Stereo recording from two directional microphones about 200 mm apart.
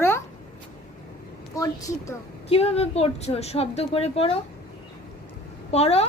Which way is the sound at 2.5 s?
30° left (ahead or behind).